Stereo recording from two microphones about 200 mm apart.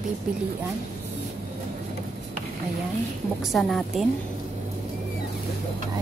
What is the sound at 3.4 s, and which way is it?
Speech, centre (ahead or behind).